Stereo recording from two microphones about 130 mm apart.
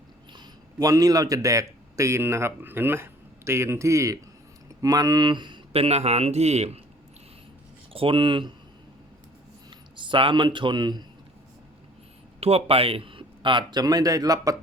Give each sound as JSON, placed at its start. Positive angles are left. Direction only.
{"t": 0.3, "sound": "a man's voice", "side_deg": -25}
{"t": 7.9, "sound": "a man's voice", "side_deg": -40}
{"t": 9.6, "sound": "speech", "side_deg": -40}
{"t": 12.4, "sound": "a man's voice", "side_deg": -50}